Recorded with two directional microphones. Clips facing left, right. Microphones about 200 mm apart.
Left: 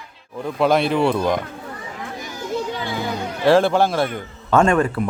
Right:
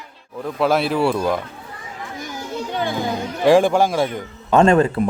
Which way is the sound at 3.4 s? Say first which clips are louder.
Right 1 dB; 15° right (ahead or behind).